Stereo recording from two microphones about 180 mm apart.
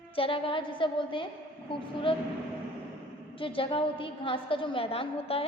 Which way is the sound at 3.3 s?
30° left (ahead or behind).